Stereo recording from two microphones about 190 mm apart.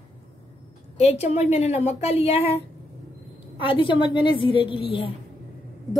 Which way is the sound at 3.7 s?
25° left (ahead or behind).